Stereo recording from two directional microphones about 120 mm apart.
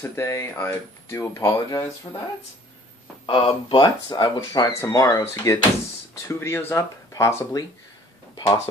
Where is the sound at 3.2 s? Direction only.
45° left (ahead or behind); by 5.5 s 30° left (ahead or behind).